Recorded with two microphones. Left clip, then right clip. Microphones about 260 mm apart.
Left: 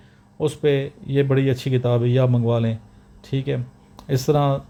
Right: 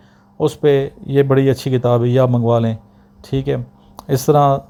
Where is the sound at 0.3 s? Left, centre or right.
Right.